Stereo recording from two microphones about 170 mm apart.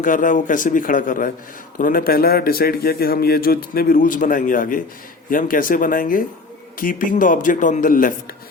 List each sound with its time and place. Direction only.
0.0 s a man's voice: 50° left (ahead or behind)